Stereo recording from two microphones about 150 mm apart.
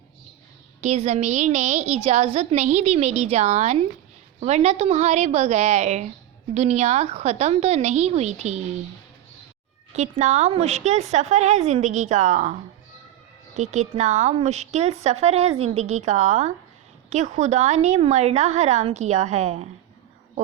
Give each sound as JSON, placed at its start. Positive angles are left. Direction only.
{"t": 0.8, "sound": "a woman's voice", "side_deg": -45}
{"t": 9.9, "sound": "a woman's voice", "side_deg": -50}
{"t": 13.6, "sound": "a woman's voice", "side_deg": -50}